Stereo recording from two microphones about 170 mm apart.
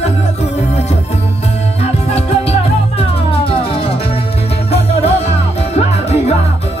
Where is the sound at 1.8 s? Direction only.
35° left (ahead or behind).